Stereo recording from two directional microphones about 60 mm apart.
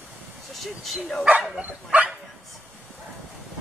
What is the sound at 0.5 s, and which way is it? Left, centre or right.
Vehicle, centre.